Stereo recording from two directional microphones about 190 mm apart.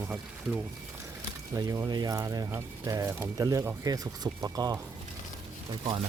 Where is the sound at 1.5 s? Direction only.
20° right (ahead or behind).